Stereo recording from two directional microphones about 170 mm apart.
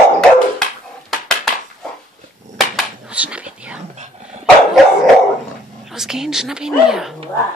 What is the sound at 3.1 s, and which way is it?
Dog, 5° right (ahead or behind).